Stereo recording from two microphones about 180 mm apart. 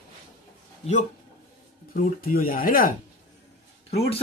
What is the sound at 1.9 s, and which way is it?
Speech, 50° left (ahead or behind).